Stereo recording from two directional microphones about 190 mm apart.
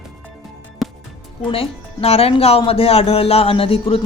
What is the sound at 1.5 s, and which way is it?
Speech, 30° left (ahead or behind).